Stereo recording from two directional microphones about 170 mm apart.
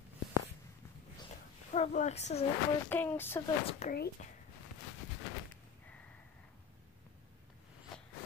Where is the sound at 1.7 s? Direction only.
45° left (ahead or behind).